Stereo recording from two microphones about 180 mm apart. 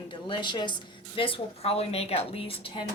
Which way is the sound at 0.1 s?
25° left (ahead or behind).